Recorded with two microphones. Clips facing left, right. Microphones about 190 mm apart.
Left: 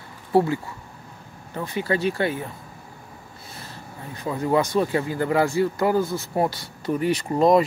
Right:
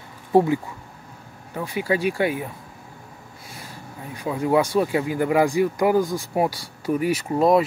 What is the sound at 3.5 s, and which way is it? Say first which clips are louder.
Speech: right 1 dB; 10° right (ahead or behind).